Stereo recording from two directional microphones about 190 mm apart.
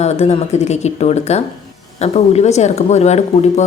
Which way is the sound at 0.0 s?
35° left (ahead or behind).